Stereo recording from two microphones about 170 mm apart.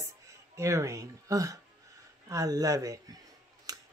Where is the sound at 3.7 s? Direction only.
20° right (ahead or behind).